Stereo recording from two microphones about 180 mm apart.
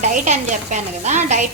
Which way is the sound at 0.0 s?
40° right (ahead or behind).